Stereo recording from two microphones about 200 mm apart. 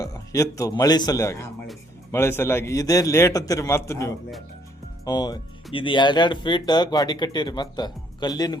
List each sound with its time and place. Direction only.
0.0 s a man's voice: 15° left (ahead or behind)